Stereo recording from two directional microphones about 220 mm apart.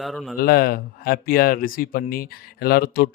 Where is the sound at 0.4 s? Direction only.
40° left (ahead or behind).